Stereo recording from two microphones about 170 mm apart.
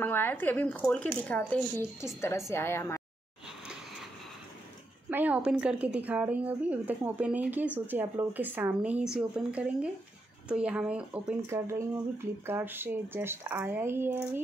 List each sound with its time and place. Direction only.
0.0 s a woman's voice: 10° left (ahead or behind)
3.4 s a sound: 5° right (ahead or behind)
5.1 s speech: 10° right (ahead or behind)